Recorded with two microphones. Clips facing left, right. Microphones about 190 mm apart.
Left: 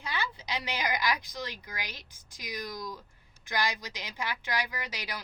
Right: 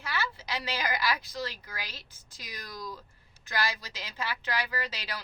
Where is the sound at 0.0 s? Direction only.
15° left (ahead or behind).